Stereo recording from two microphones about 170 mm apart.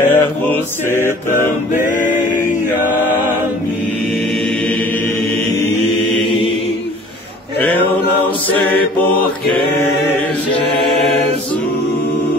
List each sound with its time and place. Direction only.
0.0 s mantra: 10° left (ahead or behind)
1.9 s a sound: 45° left (ahead or behind)
8.5 s mantra: 10° left (ahead or behind)